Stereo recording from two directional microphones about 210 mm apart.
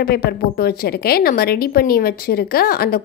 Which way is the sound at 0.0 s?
45° left (ahead or behind).